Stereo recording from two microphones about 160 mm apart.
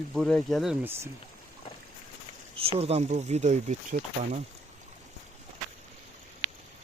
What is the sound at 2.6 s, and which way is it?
Speech, 40° right (ahead or behind).